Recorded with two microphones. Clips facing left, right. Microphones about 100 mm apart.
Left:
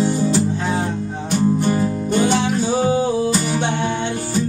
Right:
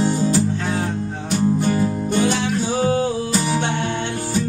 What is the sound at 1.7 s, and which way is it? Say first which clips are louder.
Music: left 1 dB; 25° left (ahead or behind).